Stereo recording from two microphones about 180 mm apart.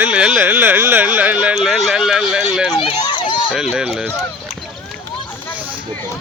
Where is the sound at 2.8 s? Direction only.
25° left (ahead or behind).